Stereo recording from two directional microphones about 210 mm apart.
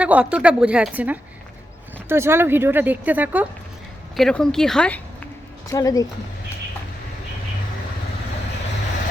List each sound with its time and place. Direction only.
0.0 s a woman's voice: 5° right (ahead or behind)
4.2 s a woman's voice: 5° left (ahead or behind)
5.6 s speech: 15° left (ahead or behind)